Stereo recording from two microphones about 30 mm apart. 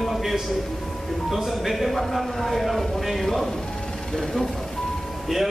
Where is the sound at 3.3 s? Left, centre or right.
Centre.